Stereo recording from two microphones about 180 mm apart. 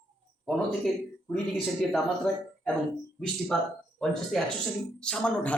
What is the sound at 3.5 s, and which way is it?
Speech, centre (ahead or behind).